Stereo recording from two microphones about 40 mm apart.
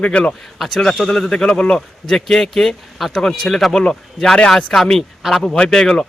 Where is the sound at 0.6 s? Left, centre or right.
Centre.